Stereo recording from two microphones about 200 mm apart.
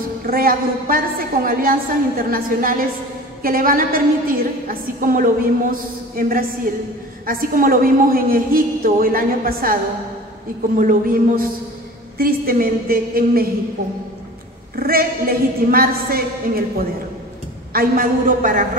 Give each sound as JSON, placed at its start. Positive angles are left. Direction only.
{"t": 0.3, "sound": "a woman's voice", "side_deg": -45}
{"t": 10.8, "sound": "a woman's voice", "side_deg": -45}
{"t": 14.8, "sound": "a woman's voice", "side_deg": -45}
{"t": 17.7, "sound": "a woman's voice", "side_deg": -45}